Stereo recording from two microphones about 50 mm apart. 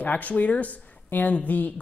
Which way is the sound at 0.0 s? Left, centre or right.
Left.